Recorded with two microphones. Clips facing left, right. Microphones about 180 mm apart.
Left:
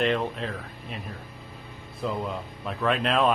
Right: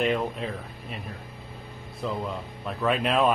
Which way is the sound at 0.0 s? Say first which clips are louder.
Even; 5° right (ahead or behind).